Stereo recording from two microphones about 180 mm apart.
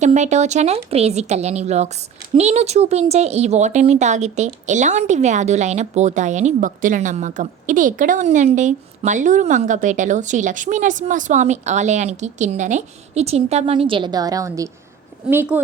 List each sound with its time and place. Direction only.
0.0 s speech: 40° right (ahead or behind); by 15.6 s 10° right (ahead or behind)